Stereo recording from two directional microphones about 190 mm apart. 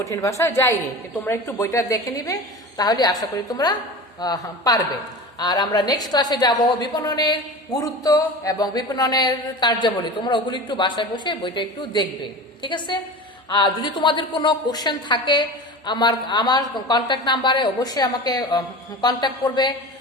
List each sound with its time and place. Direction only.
0.0 s a woman's voice: 15° left (ahead or behind)